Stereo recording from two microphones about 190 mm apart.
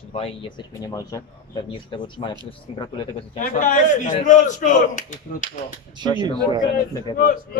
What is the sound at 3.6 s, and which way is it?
Speech, 40° left (ahead or behind).